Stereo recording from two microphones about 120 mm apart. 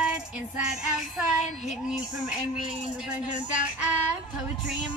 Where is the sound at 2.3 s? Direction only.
5° right (ahead or behind).